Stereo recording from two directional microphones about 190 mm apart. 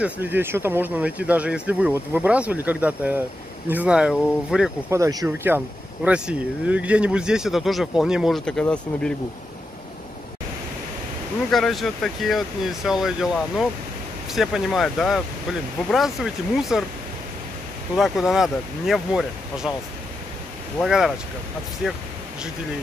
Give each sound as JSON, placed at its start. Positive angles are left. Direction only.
{"t": 0.0, "sound": "speech", "side_deg": -10}
{"t": 4.9, "sound": "speech", "side_deg": -15}
{"t": 11.5, "sound": "speech", "side_deg": 0}
{"t": 17.9, "sound": "speech", "side_deg": 0}
{"t": 20.8, "sound": "speech", "side_deg": 0}